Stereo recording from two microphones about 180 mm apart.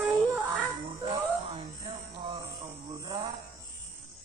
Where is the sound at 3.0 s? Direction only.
25° right (ahead or behind).